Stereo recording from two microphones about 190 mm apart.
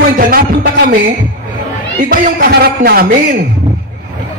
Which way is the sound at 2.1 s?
55° right (ahead or behind).